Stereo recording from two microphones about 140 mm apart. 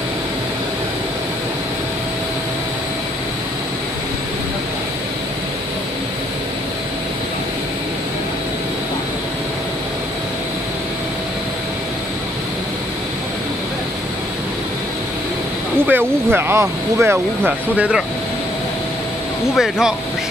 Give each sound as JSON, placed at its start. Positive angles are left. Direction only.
{"t": 15.9, "sound": "speech", "side_deg": -15}
{"t": 19.5, "sound": "speech", "side_deg": -5}